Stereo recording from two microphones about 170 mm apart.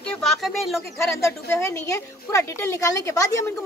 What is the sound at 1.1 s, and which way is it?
A woman's voice, 15° left (ahead or behind).